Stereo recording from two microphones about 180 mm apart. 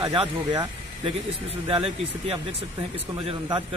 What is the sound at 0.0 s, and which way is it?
Speech, 25° right (ahead or behind).